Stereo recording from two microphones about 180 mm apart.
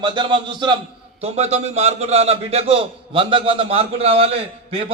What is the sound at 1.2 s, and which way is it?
A man's voice, 35° right (ahead or behind).